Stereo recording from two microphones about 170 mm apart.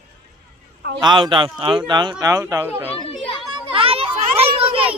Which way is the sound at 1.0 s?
30° right (ahead or behind).